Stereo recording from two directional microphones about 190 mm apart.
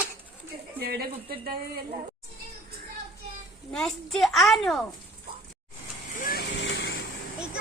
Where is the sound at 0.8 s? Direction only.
55° right (ahead or behind).